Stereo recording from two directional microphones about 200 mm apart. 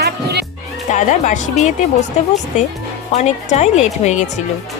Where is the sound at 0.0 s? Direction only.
55° right (ahead or behind).